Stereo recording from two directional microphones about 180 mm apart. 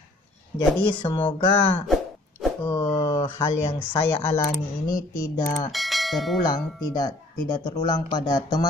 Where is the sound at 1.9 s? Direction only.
Centre (ahead or behind).